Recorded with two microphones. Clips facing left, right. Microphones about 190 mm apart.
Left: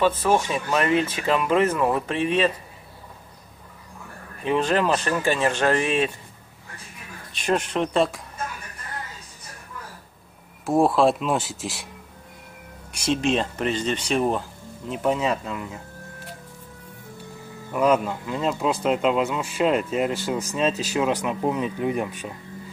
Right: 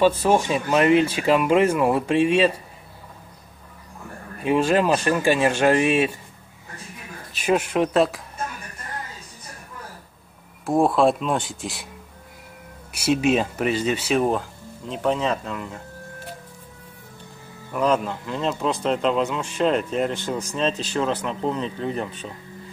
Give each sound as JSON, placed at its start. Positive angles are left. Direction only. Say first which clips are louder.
{"t": 0.3, "sound": "speech", "louder": "right 2 dB", "side_deg": -20}
{"t": 4.5, "sound": "speech", "louder": "right 2 dB", "side_deg": -10}
{"t": 7.3, "sound": "speech", "louder": "right 3 dB", "side_deg": -5}
{"t": 10.6, "sound": "speech", "louder": "even", "side_deg": 0}
{"t": 12.9, "sound": "speech", "louder": "right 3 dB", "side_deg": -5}
{"t": 17.7, "sound": "speech", "louder": "left 1 dB", "side_deg": 5}